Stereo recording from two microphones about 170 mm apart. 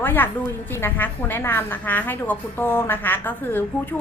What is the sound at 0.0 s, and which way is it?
A woman's voice, 10° left (ahead or behind).